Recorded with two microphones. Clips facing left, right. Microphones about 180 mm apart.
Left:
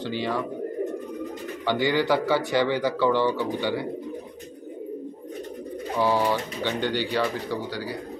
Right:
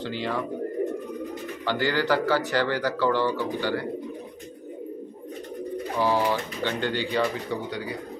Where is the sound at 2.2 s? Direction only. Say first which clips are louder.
Left 1 dB; 20° left (ahead or behind).